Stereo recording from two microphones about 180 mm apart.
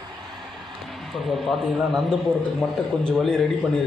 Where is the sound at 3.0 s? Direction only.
5° left (ahead or behind).